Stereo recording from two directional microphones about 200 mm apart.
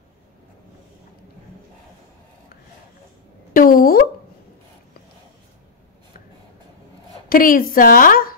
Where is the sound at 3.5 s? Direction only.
45° left (ahead or behind).